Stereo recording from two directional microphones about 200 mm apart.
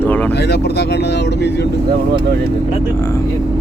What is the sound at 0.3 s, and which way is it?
Speech, 55° left (ahead or behind).